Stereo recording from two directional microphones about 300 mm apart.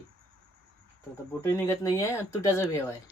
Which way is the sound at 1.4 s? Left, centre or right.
Centre.